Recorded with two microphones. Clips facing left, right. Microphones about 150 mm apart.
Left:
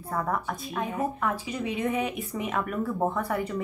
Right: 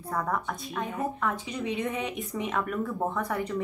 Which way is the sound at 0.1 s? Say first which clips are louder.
Left 1 dB; 5° left (ahead or behind).